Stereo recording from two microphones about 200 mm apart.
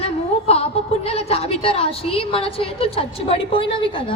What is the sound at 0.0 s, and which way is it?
A woman's voice, 30° left (ahead or behind).